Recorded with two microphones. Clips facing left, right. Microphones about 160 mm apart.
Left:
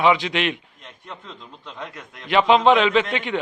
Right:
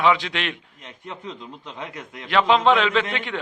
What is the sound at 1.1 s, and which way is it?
Speech, 20° right (ahead or behind).